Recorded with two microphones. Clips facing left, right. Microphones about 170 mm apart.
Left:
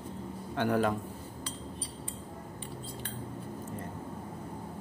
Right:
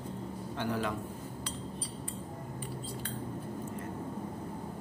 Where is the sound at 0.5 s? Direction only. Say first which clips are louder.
Left 6 dB; 55° left (ahead or behind).